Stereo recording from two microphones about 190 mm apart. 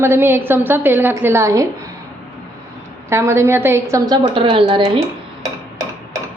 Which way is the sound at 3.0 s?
15° right (ahead or behind).